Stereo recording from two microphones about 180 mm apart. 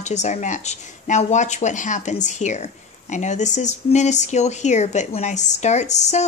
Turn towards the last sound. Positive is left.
turn(degrees=40)  # may be behind; listen again after turning